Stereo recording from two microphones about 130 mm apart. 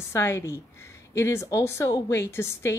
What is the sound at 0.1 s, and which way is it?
Speech, 20° left (ahead or behind).